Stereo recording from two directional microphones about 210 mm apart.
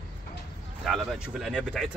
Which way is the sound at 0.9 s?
Centre (ahead or behind).